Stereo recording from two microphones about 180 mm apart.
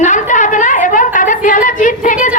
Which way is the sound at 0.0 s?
45° left (ahead or behind).